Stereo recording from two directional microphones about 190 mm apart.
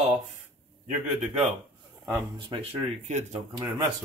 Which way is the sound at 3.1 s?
35° right (ahead or behind).